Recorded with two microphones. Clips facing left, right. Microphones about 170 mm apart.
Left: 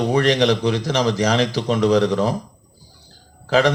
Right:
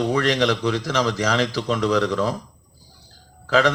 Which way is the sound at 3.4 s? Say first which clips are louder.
Left 2 dB; 20° left (ahead or behind).